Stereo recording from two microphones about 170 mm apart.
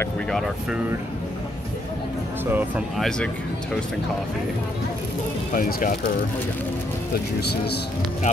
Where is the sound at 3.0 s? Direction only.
5° left (ahead or behind).